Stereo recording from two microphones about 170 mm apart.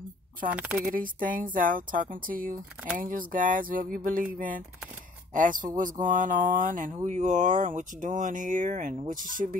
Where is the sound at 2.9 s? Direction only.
55° right (ahead or behind).